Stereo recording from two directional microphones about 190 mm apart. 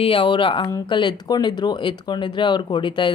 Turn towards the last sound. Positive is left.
turn(degrees=25)  # may be behind; listen again after turning